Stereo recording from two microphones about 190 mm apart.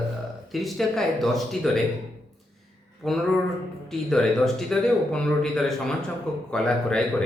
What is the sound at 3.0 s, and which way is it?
Speech, centre (ahead or behind).